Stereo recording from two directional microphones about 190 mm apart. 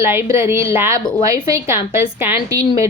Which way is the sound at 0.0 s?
15° right (ahead or behind).